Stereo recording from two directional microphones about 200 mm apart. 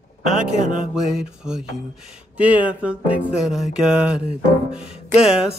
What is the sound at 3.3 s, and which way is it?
Music, centre (ahead or behind).